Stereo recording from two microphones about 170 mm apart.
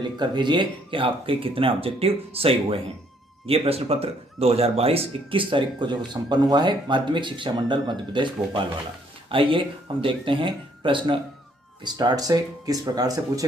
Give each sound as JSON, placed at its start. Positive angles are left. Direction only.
{"t": 0.0, "sound": "speech", "side_deg": -25}